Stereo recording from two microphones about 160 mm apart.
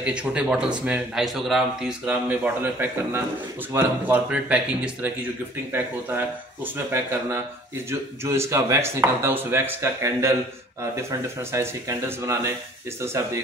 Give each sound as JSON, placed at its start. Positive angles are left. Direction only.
{"t": 0.0, "sound": "a man's voice", "side_deg": -5}